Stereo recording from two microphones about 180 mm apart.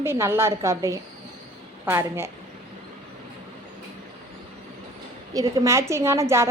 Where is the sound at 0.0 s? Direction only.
15° right (ahead or behind).